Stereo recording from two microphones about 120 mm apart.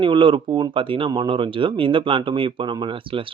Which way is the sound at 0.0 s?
45° right (ahead or behind).